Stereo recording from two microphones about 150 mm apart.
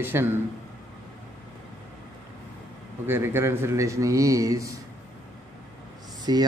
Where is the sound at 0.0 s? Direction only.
15° right (ahead or behind).